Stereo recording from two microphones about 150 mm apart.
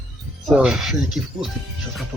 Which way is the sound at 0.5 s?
5° right (ahead or behind).